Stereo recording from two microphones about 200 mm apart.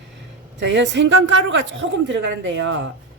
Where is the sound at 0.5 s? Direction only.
65° right (ahead or behind).